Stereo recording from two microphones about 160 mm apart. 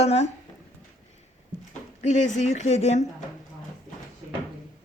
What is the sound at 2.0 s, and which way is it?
Speech, 45° left (ahead or behind).